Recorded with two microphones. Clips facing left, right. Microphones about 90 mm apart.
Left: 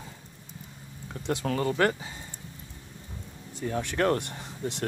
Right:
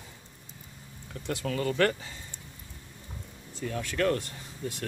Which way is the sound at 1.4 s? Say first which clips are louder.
Left 2 dB; 35° left (ahead or behind).